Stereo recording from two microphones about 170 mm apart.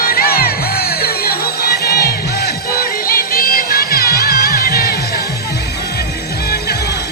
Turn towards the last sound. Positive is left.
turn(degrees=65)  # may be behind; listen again after turning